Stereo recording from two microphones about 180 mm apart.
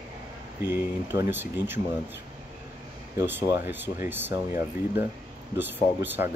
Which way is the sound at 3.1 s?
15° right (ahead or behind).